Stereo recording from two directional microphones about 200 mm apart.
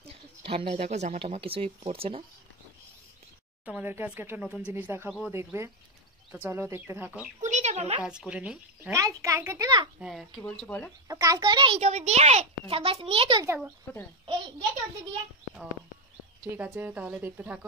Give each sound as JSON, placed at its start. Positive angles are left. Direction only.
{"t": 0.1, "sound": "speech", "side_deg": -30}
{"t": 3.6, "sound": "speech", "side_deg": -10}
{"t": 7.4, "sound": "a sound", "side_deg": -35}
{"t": 8.0, "sound": "speech", "side_deg": -5}
{"t": 8.9, "sound": "speech", "side_deg": -15}
{"t": 9.9, "sound": "speech", "side_deg": 0}
{"t": 11.1, "sound": "a child's voice", "side_deg": -20}
{"t": 16.5, "sound": "speech", "side_deg": -10}